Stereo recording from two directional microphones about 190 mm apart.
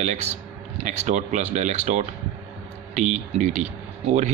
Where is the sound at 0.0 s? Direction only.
40° right (ahead or behind).